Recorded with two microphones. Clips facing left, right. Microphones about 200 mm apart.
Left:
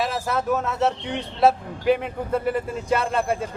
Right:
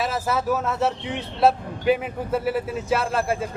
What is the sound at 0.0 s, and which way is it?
A man's voice, centre (ahead or behind).